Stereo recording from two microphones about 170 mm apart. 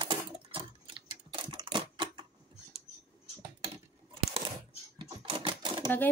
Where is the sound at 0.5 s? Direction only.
30° right (ahead or behind).